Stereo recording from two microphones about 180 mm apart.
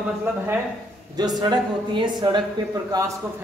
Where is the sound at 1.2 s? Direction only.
20° right (ahead or behind).